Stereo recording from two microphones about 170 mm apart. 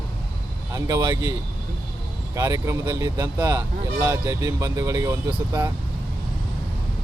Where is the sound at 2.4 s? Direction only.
20° right (ahead or behind).